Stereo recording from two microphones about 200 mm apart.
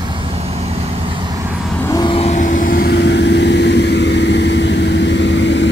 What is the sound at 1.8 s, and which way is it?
Vehicle, 20° left (ahead or behind).